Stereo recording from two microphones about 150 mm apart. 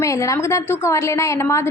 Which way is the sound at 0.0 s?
20° left (ahead or behind).